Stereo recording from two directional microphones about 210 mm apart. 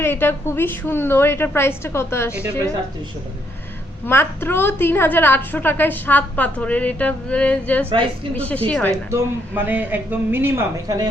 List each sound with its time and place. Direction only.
0.0 s a woman's voice: 10° left (ahead or behind)
4.0 s a woman's voice: 10° left (ahead or behind)
7.9 s a woman's voice: 25° right (ahead or behind)
8.4 s a woman's voice: 5° left (ahead or behind)
9.0 s speech: 10° right (ahead or behind)